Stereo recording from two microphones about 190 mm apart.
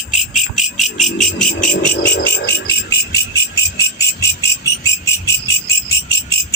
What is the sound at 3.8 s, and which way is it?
Insect, 15° left (ahead or behind).